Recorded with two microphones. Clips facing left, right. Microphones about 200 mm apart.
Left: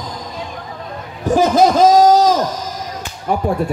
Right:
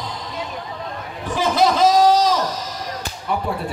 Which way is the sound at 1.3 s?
45° left (ahead or behind).